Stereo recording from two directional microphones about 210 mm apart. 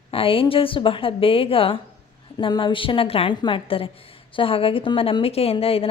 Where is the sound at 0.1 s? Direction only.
25° left (ahead or behind).